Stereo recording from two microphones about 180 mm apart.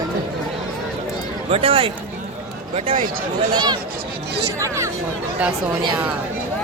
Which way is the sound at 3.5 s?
25° right (ahead or behind).